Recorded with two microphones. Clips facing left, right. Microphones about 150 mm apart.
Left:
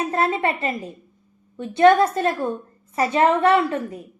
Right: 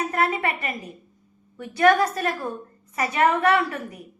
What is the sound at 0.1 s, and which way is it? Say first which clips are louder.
A woman's voice: left 3 dB; 25° left (ahead or behind).